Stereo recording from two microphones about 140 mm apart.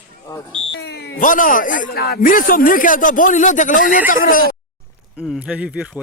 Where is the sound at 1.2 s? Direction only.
75° left (ahead or behind).